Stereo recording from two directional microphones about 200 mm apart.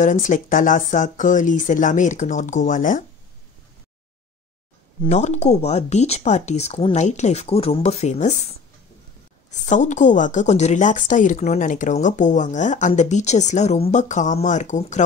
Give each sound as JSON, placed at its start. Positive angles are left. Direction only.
{"t": 0.0, "sound": "a woman's voice", "side_deg": 40}
{"t": 5.0, "sound": "a woman's voice", "side_deg": 35}
{"t": 9.5, "sound": "a woman's voice", "side_deg": 35}